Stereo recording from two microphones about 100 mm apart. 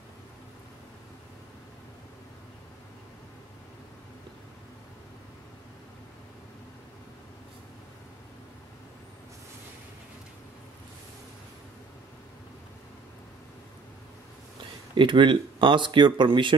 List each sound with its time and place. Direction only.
15.0 s speech: 55° right (ahead or behind)